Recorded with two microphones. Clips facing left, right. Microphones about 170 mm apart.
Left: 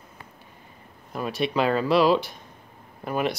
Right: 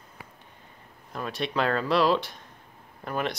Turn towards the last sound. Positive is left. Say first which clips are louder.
# left 4 dB
turn(degrees=5)  # may be behind; listen again after turning